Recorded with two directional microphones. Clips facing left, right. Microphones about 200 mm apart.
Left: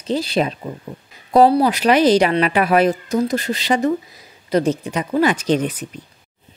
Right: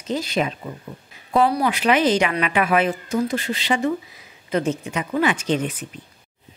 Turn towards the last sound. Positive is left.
turn(degrees=40)  # may be behind; listen again after turning